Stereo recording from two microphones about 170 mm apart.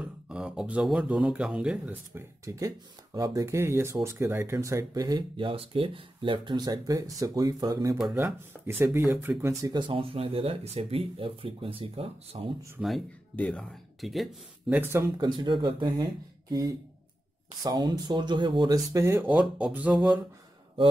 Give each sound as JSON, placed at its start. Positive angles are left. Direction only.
{"t": 0.0, "sound": "speech", "side_deg": -5}
{"t": 12.7, "sound": "speech", "side_deg": 0}
{"t": 14.7, "sound": "speech", "side_deg": -15}